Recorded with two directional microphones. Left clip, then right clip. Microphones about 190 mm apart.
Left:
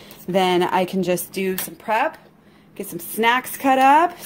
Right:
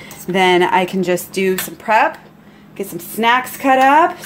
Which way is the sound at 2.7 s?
30° left (ahead or behind).